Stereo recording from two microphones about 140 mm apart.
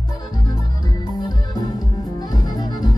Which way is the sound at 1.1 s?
30° left (ahead or behind).